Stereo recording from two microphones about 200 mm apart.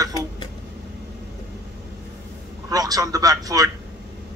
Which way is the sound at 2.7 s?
20° right (ahead or behind).